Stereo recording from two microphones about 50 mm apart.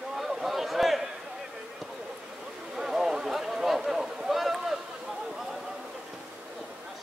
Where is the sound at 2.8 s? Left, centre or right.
Centre.